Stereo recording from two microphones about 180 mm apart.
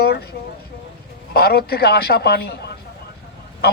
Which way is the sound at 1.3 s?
60° left (ahead or behind).